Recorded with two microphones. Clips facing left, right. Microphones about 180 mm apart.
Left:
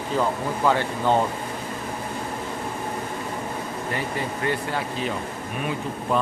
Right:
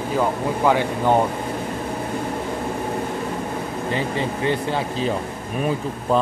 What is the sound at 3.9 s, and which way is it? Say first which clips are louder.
Speech: right 5 dB; 25° right (ahead or behind).